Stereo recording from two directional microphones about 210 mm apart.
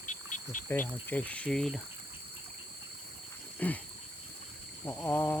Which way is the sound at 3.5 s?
10° left (ahead or behind).